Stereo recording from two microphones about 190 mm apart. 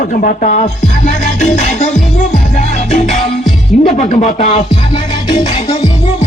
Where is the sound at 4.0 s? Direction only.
40° left (ahead or behind).